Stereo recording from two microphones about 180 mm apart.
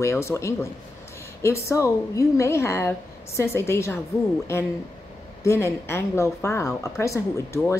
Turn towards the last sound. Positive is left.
turn(degrees=15)  # may be behind; listen again after turning